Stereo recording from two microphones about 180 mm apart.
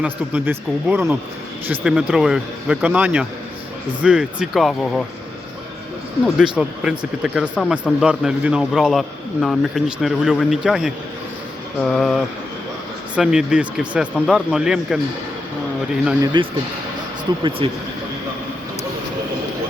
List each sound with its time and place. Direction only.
0.0 s speech: 5° right (ahead or behind)
6.6 s speech: centre (ahead or behind)
16.2 s speech: 25° right (ahead or behind)